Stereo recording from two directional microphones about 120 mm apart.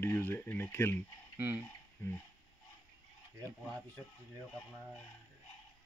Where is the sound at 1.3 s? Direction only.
15° right (ahead or behind).